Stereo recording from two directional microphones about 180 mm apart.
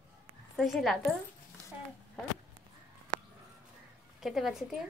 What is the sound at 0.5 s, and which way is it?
Speech, centre (ahead or behind).